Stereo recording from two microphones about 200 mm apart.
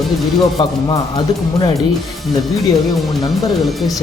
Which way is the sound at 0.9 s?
25° left (ahead or behind).